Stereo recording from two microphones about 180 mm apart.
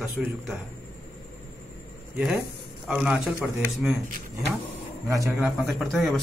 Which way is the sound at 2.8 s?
5° right (ahead or behind).